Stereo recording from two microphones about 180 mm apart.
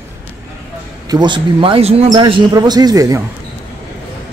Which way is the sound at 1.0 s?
25° right (ahead or behind).